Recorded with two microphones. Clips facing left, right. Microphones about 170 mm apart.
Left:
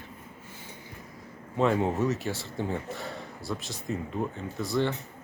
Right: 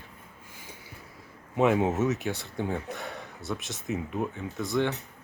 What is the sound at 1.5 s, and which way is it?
Speech, 10° right (ahead or behind).